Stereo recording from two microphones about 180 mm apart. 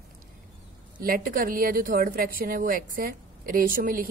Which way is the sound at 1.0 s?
50° right (ahead or behind).